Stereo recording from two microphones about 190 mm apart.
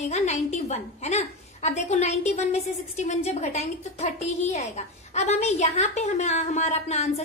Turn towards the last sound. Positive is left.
turn(degrees=35)  # may be behind; listen again after turning